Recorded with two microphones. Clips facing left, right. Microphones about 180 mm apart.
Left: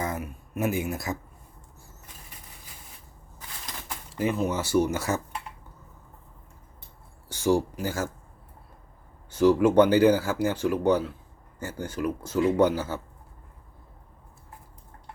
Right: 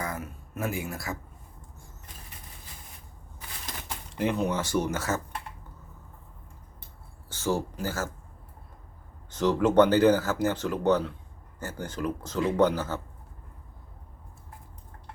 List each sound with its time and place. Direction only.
0.0 s a sound: 20° left (ahead or behind)
4.2 s speech: 5° left (ahead or behind)
7.3 s speech: 15° left (ahead or behind)
9.3 s speech: 10° left (ahead or behind)